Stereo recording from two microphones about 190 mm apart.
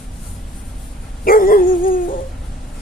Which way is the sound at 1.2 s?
50° left (ahead or behind).